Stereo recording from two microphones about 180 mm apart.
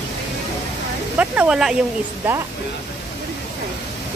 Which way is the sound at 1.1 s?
5° right (ahead or behind).